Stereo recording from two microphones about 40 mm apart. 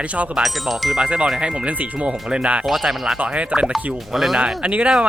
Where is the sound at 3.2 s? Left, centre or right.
Right.